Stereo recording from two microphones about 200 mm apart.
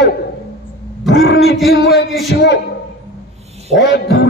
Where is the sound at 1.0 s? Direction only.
75° left (ahead or behind).